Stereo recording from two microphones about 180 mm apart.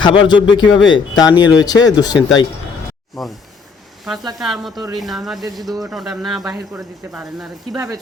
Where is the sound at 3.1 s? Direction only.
Centre (ahead or behind).